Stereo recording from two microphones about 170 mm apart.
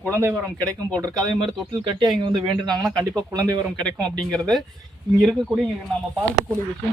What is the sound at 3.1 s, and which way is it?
Speech, 20° right (ahead or behind).